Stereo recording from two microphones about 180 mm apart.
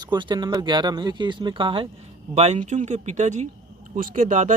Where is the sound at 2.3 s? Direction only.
40° right (ahead or behind).